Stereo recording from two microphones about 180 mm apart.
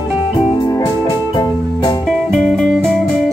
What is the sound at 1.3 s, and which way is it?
Music, 20° left (ahead or behind).